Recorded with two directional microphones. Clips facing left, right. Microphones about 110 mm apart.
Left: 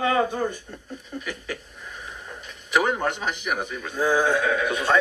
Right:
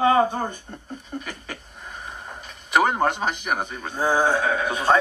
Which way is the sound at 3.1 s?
40° right (ahead or behind).